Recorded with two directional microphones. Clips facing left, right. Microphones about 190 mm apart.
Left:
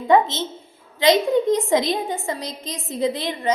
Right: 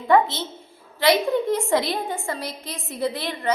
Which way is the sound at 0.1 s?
20° left (ahead or behind).